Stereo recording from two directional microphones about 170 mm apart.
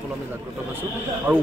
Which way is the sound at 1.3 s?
10° right (ahead or behind).